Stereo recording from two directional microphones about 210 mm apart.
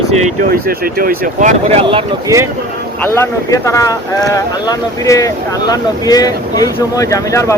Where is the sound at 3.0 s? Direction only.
10° left (ahead or behind).